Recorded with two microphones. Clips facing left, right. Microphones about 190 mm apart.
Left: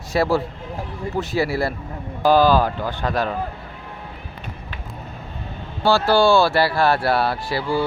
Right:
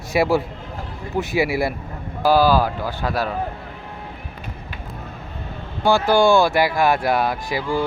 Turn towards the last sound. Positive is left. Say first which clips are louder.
# even
turn(degrees=-15)  # may be behind; listen again after turning